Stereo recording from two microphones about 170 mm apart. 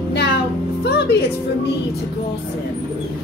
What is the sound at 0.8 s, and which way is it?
Music, 70° left (ahead or behind).